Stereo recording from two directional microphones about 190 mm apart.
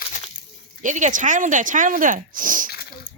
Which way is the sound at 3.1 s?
80° left.